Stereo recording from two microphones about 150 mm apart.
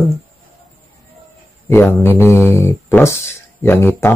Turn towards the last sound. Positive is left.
turn(degrees=15)  # may be behind; listen again after turning